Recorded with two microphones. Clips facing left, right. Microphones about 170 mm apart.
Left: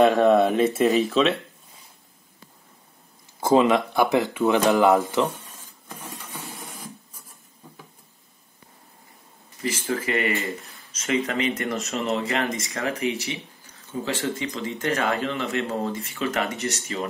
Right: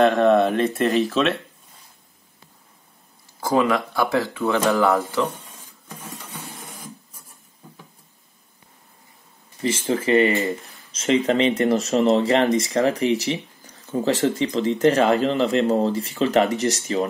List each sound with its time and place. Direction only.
0.0 s speech: centre (ahead or behind)
3.3 s speech: 20° left (ahead or behind)
9.6 s speech: 25° right (ahead or behind)